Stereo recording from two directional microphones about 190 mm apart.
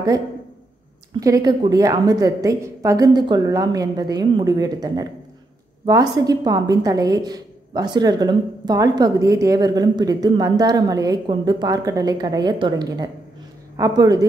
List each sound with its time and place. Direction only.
1.2 s a woman's voice: 20° right (ahead or behind)